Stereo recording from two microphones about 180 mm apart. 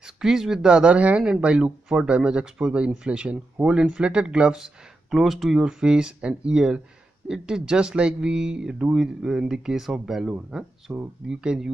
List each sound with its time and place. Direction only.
0.0 s speech: 5° right (ahead or behind)